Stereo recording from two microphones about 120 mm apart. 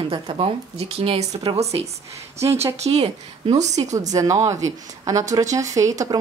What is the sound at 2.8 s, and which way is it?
A woman's voice, 65° right (ahead or behind).